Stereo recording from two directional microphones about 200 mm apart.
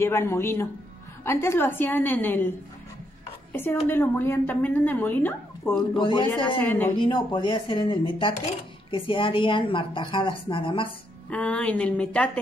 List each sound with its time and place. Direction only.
0.0 s a woman's voice: 10° left (ahead or behind)
3.8 s a woman's voice: 10° left (ahead or behind)
5.9 s a woman's voice: 25° left (ahead or behind)
6.6 s a woman's voice: 10° left (ahead or behind)
7.0 s a woman's voice: 25° left (ahead or behind)
11.2 s a woman's voice: 5° left (ahead or behind)